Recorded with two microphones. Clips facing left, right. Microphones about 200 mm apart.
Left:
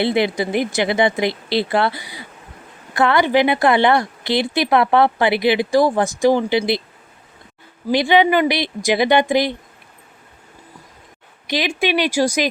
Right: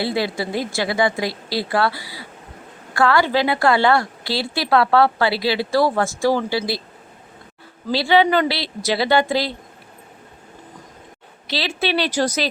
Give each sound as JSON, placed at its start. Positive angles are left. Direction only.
{"t": 0.0, "sound": "a woman's voice", "side_deg": 20}
{"t": 7.9, "sound": "speech", "side_deg": 15}
{"t": 11.4, "sound": "speech", "side_deg": 15}